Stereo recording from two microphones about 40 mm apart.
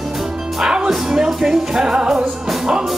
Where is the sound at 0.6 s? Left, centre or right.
Centre.